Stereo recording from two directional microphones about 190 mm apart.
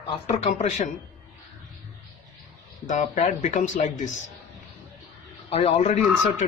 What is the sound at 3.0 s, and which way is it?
A man's voice, 40° left (ahead or behind).